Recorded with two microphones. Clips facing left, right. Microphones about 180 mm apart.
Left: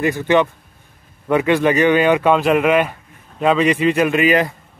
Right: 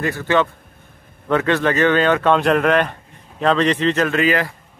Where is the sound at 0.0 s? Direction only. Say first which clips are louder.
Left 3 dB; 15° left (ahead or behind).